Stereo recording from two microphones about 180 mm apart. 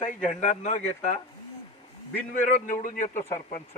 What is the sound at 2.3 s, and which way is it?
A man's voice, 45° left (ahead or behind).